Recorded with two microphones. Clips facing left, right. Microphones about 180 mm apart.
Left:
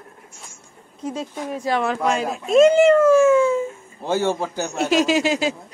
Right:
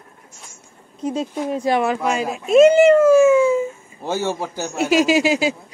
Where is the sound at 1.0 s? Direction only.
20° right (ahead or behind).